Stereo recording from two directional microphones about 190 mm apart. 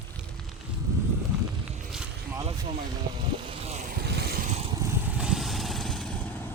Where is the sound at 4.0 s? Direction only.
55° right (ahead or behind).